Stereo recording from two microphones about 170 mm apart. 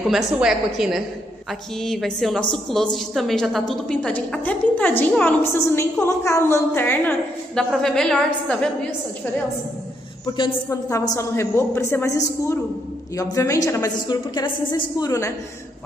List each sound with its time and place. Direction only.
0.1 s a woman's voice: centre (ahead or behind)
10.2 s a woman's voice: 25° left (ahead or behind)